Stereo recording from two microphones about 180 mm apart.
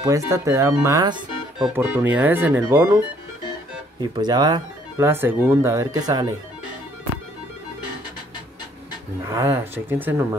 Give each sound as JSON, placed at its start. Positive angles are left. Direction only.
{"t": 0.0, "sound": "speech", "side_deg": -15}
{"t": 1.6, "sound": "speech", "side_deg": -10}
{"t": 4.0, "sound": "speech", "side_deg": -20}
{"t": 9.3, "sound": "speech", "side_deg": -15}